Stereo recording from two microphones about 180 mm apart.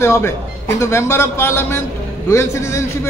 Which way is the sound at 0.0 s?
15° left (ahead or behind).